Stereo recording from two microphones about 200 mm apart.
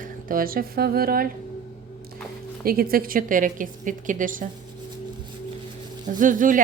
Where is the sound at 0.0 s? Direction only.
45° right (ahead or behind).